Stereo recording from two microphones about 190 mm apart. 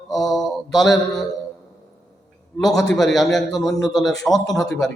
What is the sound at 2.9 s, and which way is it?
Mantra, centre (ahead or behind).